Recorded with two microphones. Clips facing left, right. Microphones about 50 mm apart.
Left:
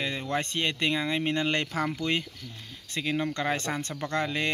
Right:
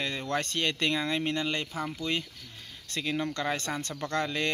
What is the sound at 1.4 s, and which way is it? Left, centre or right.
Speech, left.